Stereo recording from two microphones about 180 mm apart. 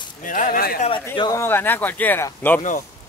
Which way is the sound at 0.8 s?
25° left (ahead or behind).